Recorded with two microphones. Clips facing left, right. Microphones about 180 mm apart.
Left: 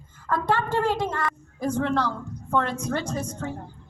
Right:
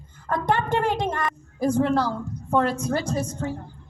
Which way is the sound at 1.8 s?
35° right (ahead or behind).